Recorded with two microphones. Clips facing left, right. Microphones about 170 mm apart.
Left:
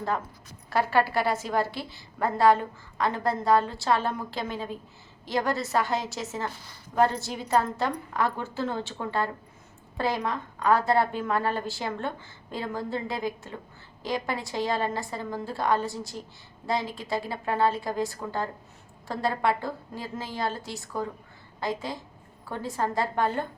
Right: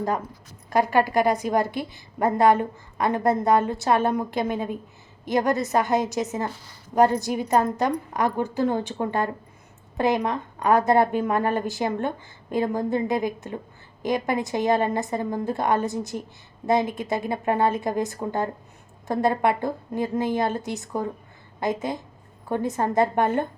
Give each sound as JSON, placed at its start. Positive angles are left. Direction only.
{"t": 0.7, "sound": "a woman's voice", "side_deg": -15}